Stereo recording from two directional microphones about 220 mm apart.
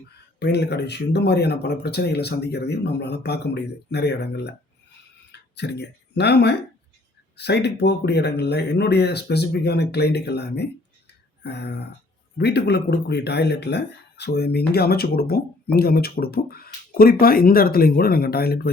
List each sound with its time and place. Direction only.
0.3 s speech: 50° left (ahead or behind)